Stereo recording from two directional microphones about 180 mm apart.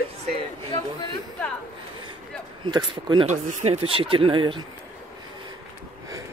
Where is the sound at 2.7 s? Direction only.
25° right (ahead or behind).